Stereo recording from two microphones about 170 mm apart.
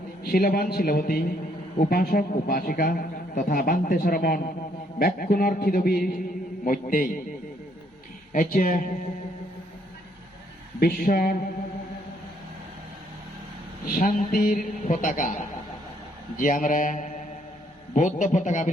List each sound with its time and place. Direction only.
0.3 s a man's voice: 60° left (ahead or behind)
8.3 s a man's voice: 50° left (ahead or behind)
10.8 s a man's voice: 60° left (ahead or behind)
13.8 s a man's voice: 55° left (ahead or behind)